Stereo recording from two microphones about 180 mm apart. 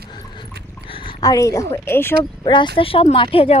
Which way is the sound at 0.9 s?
30° left (ahead or behind).